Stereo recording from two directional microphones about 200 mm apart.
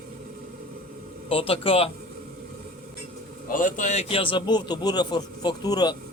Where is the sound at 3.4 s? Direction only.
40° left (ahead or behind); by 5.9 s 20° left (ahead or behind).